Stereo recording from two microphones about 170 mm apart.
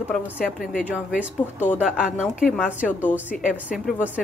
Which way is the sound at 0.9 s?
5° right (ahead or behind).